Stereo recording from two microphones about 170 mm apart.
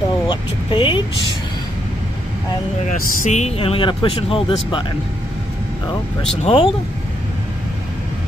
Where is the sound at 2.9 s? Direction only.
45° left (ahead or behind); by 4.9 s 30° left (ahead or behind).